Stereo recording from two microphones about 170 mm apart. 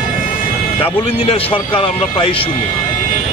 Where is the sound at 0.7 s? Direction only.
30° left (ahead or behind).